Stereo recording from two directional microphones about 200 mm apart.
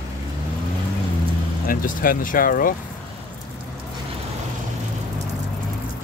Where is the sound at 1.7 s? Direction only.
45° left (ahead or behind).